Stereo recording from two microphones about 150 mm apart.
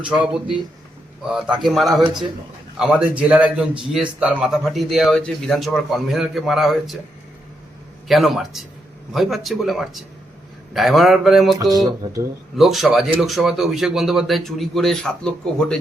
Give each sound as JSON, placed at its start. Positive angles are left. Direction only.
{"t": 0.1, "sound": "a man's voice", "side_deg": -5}
{"t": 8.0, "sound": "a man's voice", "side_deg": 0}
{"t": 11.5, "sound": "a sound", "side_deg": -25}
{"t": 12.5, "sound": "a man's voice", "side_deg": 0}